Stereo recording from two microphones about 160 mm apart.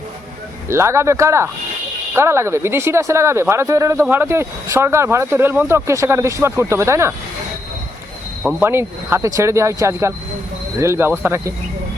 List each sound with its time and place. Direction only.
0.7 s speech: 15° right (ahead or behind)
8.4 s speech: 10° right (ahead or behind)